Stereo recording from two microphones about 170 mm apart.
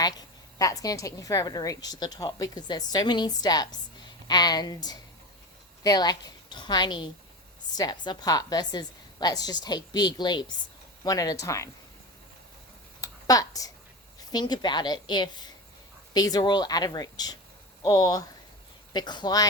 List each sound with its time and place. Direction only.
0.0 s a woman's voice: 20° left (ahead or behind)
13.0 s a sound: 20° left (ahead or behind)
14.3 s speech: 25° left (ahead or behind)